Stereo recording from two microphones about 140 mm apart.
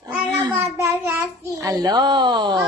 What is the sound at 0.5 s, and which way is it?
Child singing, 15° right (ahead or behind).